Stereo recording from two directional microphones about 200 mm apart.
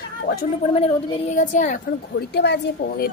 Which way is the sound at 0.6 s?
30° left (ahead or behind).